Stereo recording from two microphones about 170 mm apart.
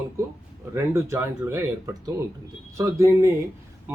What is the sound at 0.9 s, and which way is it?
Speech, 15° right (ahead or behind).